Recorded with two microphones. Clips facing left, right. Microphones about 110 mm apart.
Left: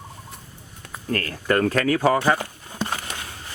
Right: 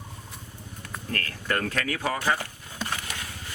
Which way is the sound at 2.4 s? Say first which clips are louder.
Left 6 dB; 25° left (ahead or behind).